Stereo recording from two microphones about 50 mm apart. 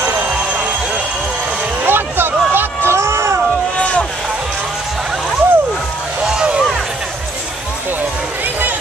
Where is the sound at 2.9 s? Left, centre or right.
Right.